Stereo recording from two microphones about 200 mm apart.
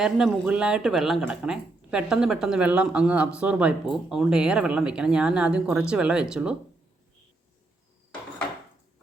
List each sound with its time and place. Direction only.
0.0 s speech: 5° right (ahead or behind)